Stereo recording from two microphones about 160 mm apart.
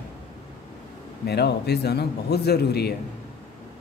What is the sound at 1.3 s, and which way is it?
A man's voice, 90° left.